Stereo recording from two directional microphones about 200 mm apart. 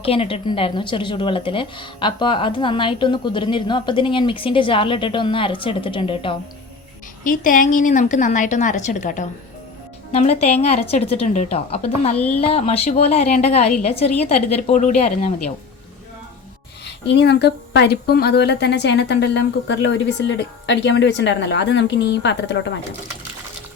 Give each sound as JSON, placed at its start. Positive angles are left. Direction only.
{"t": 0.0, "sound": "speech", "side_deg": 30}
{"t": 7.3, "sound": "a woman's voice", "side_deg": 40}
{"t": 16.8, "sound": "a woman's voice", "side_deg": 60}